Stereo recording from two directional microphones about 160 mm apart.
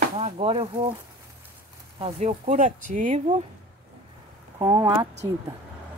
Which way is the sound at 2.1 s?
45° right (ahead or behind).